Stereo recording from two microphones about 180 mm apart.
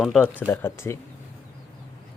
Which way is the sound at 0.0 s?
5° left (ahead or behind).